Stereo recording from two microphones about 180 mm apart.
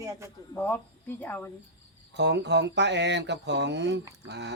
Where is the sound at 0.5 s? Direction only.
10° left (ahead or behind).